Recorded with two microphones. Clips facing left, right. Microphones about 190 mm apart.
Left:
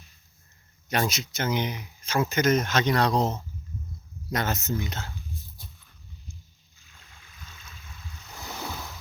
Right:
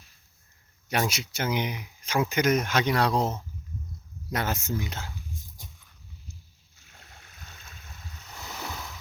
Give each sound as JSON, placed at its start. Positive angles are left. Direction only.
{"t": 0.9, "sound": "speech", "side_deg": -10}
{"t": 6.7, "sound": "a sound", "side_deg": -65}
{"t": 7.1, "sound": "stream", "side_deg": -50}